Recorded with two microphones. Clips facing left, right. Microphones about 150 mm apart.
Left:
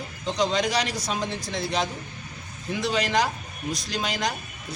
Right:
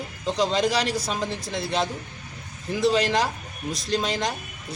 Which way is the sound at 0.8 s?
30° right (ahead or behind).